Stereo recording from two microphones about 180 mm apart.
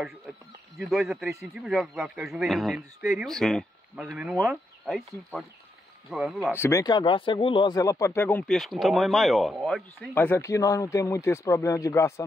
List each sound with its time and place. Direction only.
0.7 s a man's voice: centre (ahead or behind)
6.5 s speech: 15° left (ahead or behind)
10.1 s speech: 15° left (ahead or behind)